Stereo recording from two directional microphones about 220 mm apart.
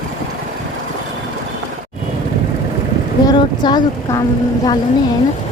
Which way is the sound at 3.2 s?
20° left (ahead or behind).